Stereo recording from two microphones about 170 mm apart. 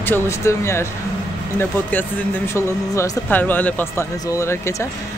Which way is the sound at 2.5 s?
20° left (ahead or behind).